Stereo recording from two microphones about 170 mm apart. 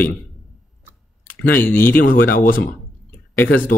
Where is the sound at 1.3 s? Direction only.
10° left (ahead or behind).